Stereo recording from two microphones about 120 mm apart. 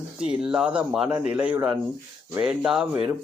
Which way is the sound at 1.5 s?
30° right (ahead or behind).